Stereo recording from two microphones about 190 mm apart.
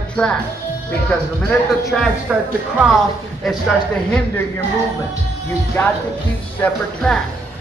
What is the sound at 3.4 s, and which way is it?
Speech, centre (ahead or behind).